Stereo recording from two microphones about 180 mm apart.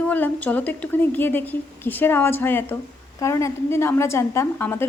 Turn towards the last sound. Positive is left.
turn(degrees=15)  # may be behind; listen again after turning